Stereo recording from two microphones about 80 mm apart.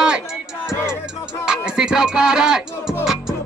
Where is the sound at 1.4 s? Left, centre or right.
Centre.